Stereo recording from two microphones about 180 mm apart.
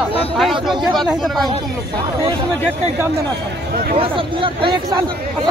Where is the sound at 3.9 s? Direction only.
30° right (ahead or behind).